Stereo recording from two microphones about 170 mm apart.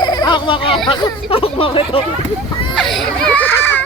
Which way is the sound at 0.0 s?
25° left (ahead or behind).